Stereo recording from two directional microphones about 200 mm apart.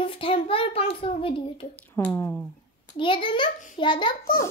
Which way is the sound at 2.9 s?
25° left (ahead or behind).